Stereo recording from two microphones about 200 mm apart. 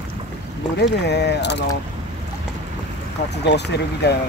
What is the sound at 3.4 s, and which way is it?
Speech, 55° left (ahead or behind).